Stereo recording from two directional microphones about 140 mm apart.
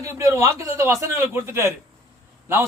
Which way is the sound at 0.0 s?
20° right (ahead or behind).